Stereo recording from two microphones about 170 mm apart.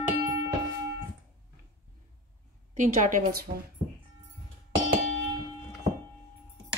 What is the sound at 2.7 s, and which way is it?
Speech, 45° right (ahead or behind).